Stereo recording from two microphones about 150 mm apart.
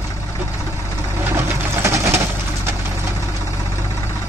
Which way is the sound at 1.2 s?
15° right (ahead or behind).